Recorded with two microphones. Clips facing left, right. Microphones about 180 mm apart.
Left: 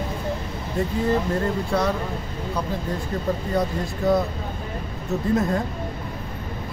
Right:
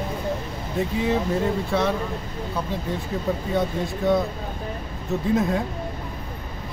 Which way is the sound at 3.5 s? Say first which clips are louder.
Even; centre (ahead or behind).